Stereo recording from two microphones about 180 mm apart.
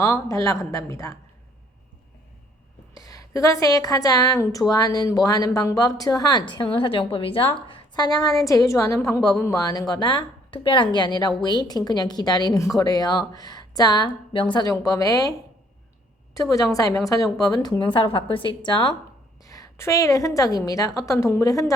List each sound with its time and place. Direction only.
0.0 s a woman's voice: 15° left (ahead or behind)
2.9 s a woman's voice: 20° left (ahead or behind)